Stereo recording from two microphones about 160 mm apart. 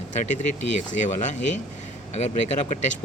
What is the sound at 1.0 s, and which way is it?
Speech, 50° left (ahead or behind).